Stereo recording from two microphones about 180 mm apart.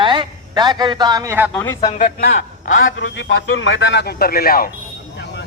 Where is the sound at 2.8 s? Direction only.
90° left; by 4.7 s 55° left (ahead or behind).